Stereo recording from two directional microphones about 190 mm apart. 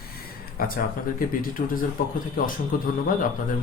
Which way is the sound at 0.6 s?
50° left (ahead or behind).